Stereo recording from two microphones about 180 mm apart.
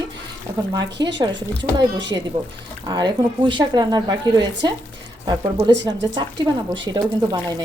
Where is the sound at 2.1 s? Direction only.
20° right (ahead or behind).